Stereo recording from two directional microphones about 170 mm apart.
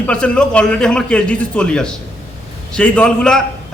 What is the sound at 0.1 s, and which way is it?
A man's voice, 5° left (ahead or behind).